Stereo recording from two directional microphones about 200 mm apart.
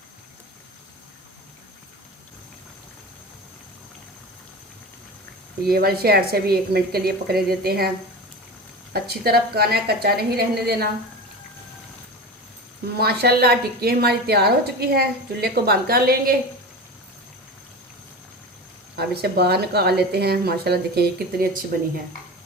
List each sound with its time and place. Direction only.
5.6 s a woman's voice: 50° right (ahead or behind)
8.9 s a woman's voice: 50° right (ahead or behind)
13.0 s a woman's voice: 50° right (ahead or behind)
18.9 s a woman's voice: 55° right (ahead or behind)